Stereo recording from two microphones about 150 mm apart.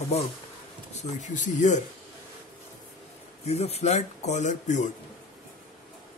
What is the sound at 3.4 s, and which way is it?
Speech, 45° left (ahead or behind).